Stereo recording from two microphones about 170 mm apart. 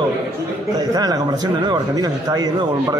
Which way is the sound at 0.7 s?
25° right (ahead or behind).